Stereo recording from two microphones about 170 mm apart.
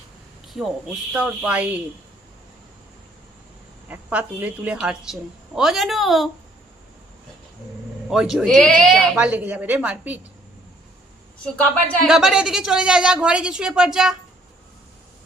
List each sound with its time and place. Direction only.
0.4 s a sound: centre (ahead or behind)
1.1 s a woman's voice: 5° right (ahead or behind)
3.8 s a woman's voice: 10° right (ahead or behind)
8.1 s speech: 5° right (ahead or behind)
12.0 s a woman's voice: centre (ahead or behind)